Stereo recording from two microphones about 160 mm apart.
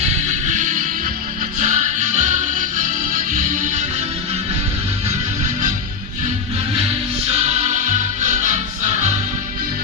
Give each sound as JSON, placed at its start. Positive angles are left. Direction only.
{"t": 0.3, "sound": "music", "side_deg": -50}
{"t": 8.2, "sound": "music", "side_deg": -50}